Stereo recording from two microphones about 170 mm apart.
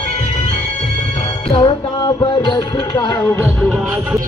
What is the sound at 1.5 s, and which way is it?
Music, 30° left (ahead or behind).